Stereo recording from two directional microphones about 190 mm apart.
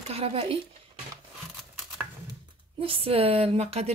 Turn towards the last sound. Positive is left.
turn(degrees=-35)  # may be behind; listen again after turning